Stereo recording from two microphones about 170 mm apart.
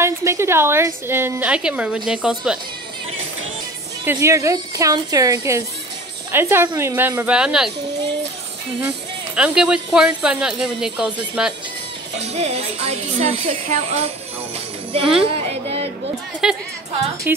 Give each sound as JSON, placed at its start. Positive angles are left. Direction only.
{"t": 0.0, "sound": "a woman's voice", "side_deg": -15}
{"t": 4.0, "sound": "a woman's voice", "side_deg": -15}
{"t": 8.8, "sound": "speech", "side_deg": -5}
{"t": 12.2, "sound": "a woman's voice", "side_deg": -40}
{"t": 15.2, "sound": "a sound", "side_deg": -35}
{"t": 16.4, "sound": "speech", "side_deg": -5}